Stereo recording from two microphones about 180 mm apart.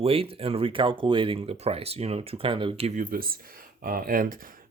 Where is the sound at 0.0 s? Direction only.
30° right (ahead or behind).